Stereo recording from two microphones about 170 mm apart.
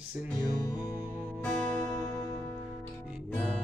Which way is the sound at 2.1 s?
20° left (ahead or behind).